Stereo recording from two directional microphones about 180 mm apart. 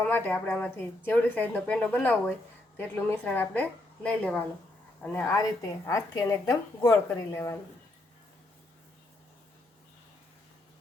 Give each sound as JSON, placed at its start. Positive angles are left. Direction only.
{"t": 0.0, "sound": "a woman's voice", "side_deg": 10}